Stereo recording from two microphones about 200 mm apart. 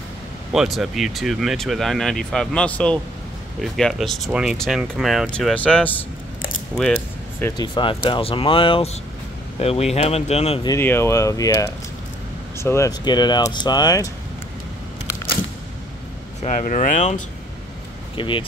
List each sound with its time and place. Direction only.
0.5 s speech: centre (ahead or behind)
7.3 s speech: 10° left (ahead or behind)
7.6 s speech: 25° left (ahead or behind)
10.7 s speech: 10° left (ahead or behind)
16.4 s speech: 40° left (ahead or behind)
18.1 s speech: 25° left (ahead or behind)